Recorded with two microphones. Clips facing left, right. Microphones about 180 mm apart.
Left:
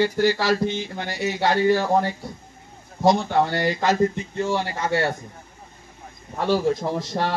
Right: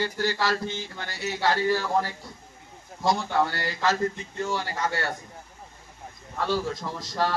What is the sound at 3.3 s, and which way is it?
Speech, 20° left (ahead or behind).